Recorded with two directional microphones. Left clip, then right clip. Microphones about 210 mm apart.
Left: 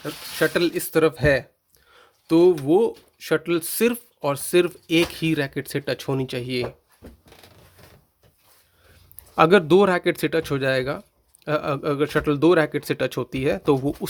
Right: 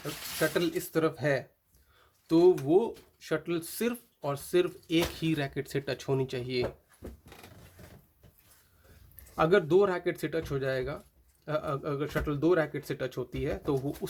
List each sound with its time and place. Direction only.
0.3 s speech: 40° left (ahead or behind)
9.3 s speech: 45° left (ahead or behind)